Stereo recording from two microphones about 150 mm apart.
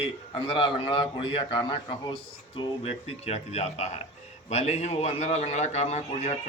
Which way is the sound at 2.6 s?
45° left (ahead or behind).